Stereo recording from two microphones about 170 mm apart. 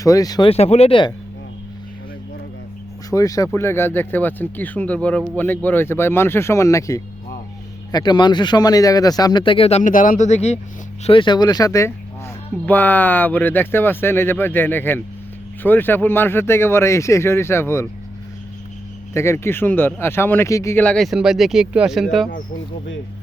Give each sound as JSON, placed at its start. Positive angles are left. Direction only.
{"t": 0.0, "sound": "speech", "side_deg": 20}
{"t": 0.5, "sound": "speech", "side_deg": 40}
{"t": 3.1, "sound": "speech", "side_deg": 20}
{"t": 11.0, "sound": "speech", "side_deg": 30}
{"t": 19.1, "sound": "speech", "side_deg": 15}